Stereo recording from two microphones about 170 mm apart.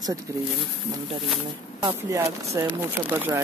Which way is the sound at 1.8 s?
25° right (ahead or behind).